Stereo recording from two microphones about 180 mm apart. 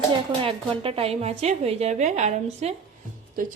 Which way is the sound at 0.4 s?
30° right (ahead or behind).